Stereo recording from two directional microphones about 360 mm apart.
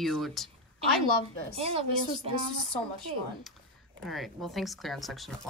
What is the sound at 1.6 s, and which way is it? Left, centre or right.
Speech, centre.